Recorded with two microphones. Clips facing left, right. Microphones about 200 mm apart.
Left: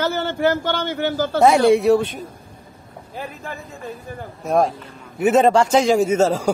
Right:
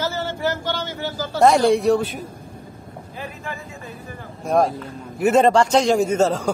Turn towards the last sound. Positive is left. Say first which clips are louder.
# left 2 dB
turn(degrees=10)  # may be behind; listen again after turning